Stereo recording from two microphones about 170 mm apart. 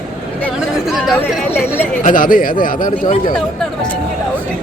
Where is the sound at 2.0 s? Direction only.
50° left (ahead or behind).